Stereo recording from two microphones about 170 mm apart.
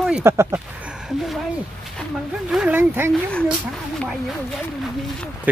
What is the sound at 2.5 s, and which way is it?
Speech, 5° right (ahead or behind).